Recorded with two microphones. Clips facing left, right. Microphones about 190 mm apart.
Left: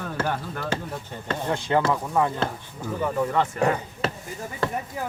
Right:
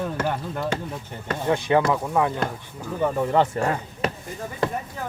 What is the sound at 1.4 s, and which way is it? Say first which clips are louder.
Speech: right 3 dB; 20° right (ahead or behind).